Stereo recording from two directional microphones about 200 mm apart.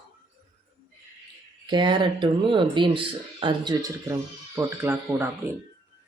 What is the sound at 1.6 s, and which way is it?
Speech, 25° right (ahead or behind).